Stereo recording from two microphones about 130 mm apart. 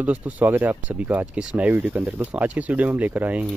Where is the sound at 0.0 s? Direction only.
10° right (ahead or behind).